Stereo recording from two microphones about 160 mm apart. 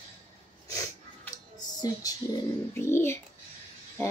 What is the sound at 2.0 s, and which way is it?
A child's voice, 25° left (ahead or behind).